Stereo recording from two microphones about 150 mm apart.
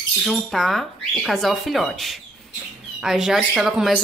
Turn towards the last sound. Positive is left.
turn(degrees=-5)  # may be behind; listen again after turning